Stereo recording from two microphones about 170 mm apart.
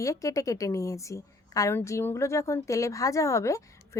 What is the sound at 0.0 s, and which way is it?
A woman's voice, 20° left (ahead or behind).